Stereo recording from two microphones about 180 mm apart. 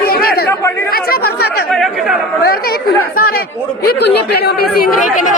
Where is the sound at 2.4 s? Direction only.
60° left (ahead or behind).